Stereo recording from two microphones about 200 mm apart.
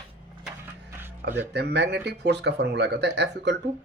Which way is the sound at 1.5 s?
55° right (ahead or behind).